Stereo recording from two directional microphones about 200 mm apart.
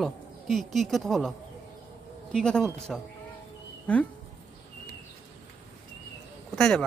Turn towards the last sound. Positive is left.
turn(degrees=5)  # may be behind; listen again after turning